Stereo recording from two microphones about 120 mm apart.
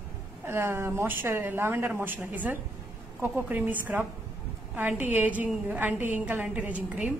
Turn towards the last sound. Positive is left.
turn(degrees=-10)  # may be behind; listen again after turning